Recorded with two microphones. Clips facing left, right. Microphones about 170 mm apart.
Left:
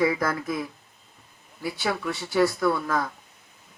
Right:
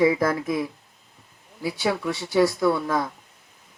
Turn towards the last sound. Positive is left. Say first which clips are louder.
# right 2 dB
turn(degrees=-20)  # may be behind; listen again after turning